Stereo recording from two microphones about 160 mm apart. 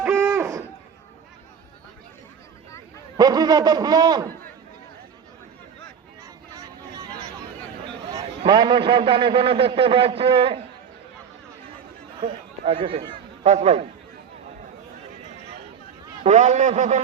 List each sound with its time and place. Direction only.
0.0 s a sound: 15° right (ahead or behind)
3.2 s a man's voice: 25° right (ahead or behind)
6.6 s vehicle: 25° right (ahead or behind)
8.1 s a man's voice: 30° right (ahead or behind)
12.2 s a man's voice: 35° right (ahead or behind)
16.2 s a man's voice: 50° right (ahead or behind)